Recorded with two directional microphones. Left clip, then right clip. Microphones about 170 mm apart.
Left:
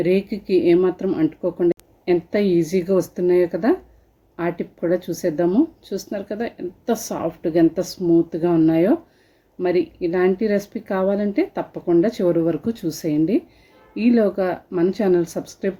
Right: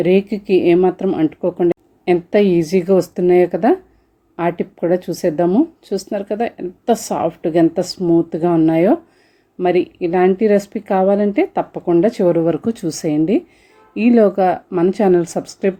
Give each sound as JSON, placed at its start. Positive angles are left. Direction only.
{"t": 0.0, "sound": "speech", "side_deg": -20}